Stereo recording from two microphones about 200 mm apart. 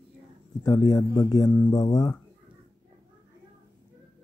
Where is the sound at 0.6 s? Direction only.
20° left (ahead or behind).